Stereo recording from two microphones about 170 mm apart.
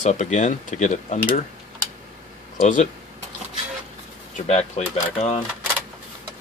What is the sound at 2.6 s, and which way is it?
Speech, 50° left (ahead or behind).